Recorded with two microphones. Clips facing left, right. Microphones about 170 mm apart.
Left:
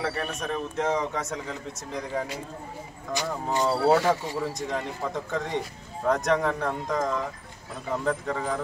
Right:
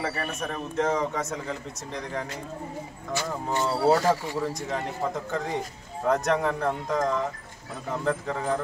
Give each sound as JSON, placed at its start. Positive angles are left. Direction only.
{"t": 0.0, "sound": "a man's voice", "side_deg": 0}
{"t": 3.1, "sound": "speech", "side_deg": 15}
{"t": 3.9, "sound": "a man's voice", "side_deg": 0}